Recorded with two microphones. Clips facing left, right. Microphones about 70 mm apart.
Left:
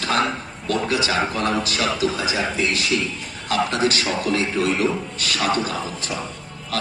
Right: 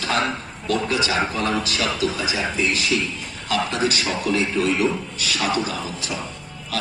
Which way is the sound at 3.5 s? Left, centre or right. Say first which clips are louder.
Left 2 dB; left.